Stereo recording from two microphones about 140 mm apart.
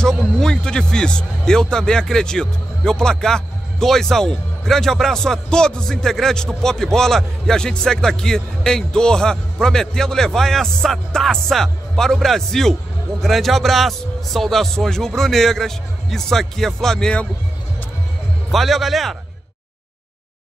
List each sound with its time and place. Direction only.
0.0 s speech: 5° left (ahead or behind)
18.5 s speech: centre (ahead or behind)